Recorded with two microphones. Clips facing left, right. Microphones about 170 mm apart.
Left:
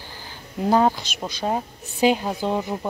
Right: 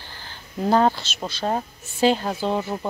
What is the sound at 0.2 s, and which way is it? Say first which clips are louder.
A woman's voice: even; 10° left (ahead or behind).